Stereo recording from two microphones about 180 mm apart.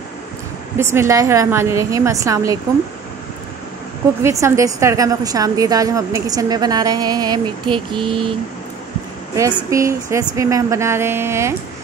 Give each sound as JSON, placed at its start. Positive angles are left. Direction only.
{"t": 0.7, "sound": "a woman's voice", "side_deg": -15}
{"t": 4.2, "sound": "a woman's voice", "side_deg": -15}
{"t": 9.7, "sound": "a woman's voice", "side_deg": -15}